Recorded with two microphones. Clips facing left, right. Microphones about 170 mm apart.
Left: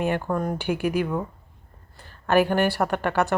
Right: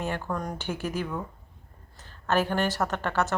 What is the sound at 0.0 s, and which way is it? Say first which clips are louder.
Speech: left 6 dB; 20° left (ahead or behind).